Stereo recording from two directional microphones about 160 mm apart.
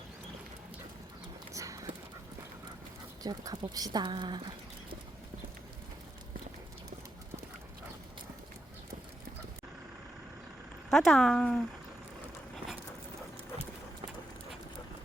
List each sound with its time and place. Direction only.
1.5 s dog: 20° right (ahead or behind)
3.2 s speech: 25° right (ahead or behind)
10.8 s speech: centre (ahead or behind)